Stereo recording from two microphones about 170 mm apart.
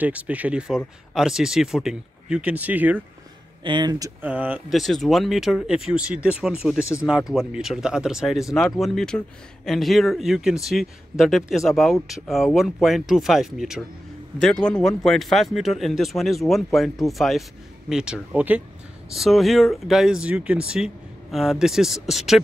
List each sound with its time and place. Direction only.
0.0 s speech: 10° right (ahead or behind)
3.6 s speech: 25° right (ahead or behind)
4.2 s speech: 10° right (ahead or behind)